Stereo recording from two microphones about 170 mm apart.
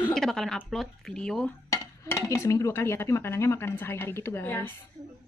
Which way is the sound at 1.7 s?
15° left (ahead or behind).